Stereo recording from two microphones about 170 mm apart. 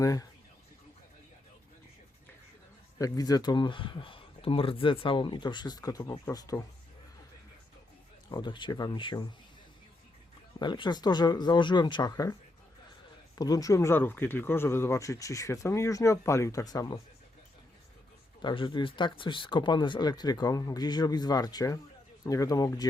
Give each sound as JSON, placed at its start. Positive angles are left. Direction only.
{"t": 0.0, "sound": "speech", "side_deg": 20}
{"t": 3.0, "sound": "speech", "side_deg": 20}
{"t": 8.3, "sound": "speech", "side_deg": 25}
{"t": 10.6, "sound": "speech", "side_deg": 25}
{"t": 18.4, "sound": "speech", "side_deg": 25}